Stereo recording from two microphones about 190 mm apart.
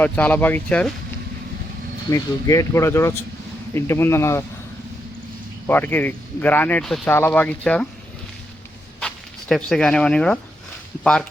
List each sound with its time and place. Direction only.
0.0 s speech: 10° left (ahead or behind)
2.0 s speech: 15° left (ahead or behind)
5.6 s speech: 10° left (ahead or behind)
9.0 s speech: 5° left (ahead or behind)